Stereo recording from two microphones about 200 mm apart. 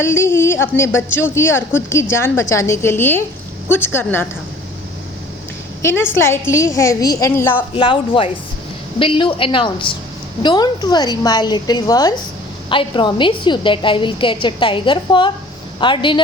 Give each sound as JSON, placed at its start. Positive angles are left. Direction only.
{"t": 0.0, "sound": "a woman's voice", "side_deg": 10}
{"t": 5.8, "sound": "a woman's voice", "side_deg": 10}
{"t": 7.8, "sound": "a woman's voice", "side_deg": 25}